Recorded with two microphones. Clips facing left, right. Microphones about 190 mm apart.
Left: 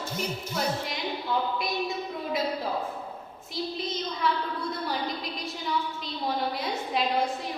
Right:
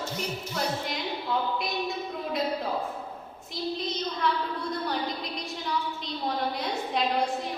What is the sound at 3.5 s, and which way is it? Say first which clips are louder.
A woman's voice: right 1 dB; centre (ahead or behind).